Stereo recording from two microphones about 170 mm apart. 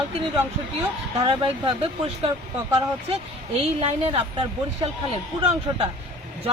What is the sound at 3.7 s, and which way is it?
Speech, 35° right (ahead or behind).